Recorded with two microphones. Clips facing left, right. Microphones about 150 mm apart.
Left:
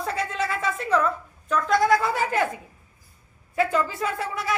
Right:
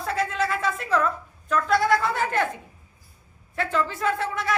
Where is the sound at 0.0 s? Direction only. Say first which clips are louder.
Right 2 dB; centre (ahead or behind).